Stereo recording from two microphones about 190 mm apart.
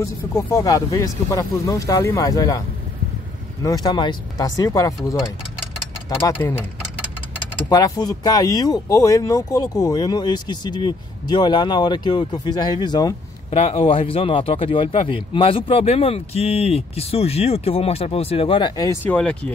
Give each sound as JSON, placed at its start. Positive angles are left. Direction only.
{"t": 0.0, "sound": "speech", "side_deg": 15}
{"t": 3.6, "sound": "speech", "side_deg": 20}
{"t": 7.7, "sound": "speech", "side_deg": 20}
{"t": 19.0, "sound": "speech", "side_deg": 5}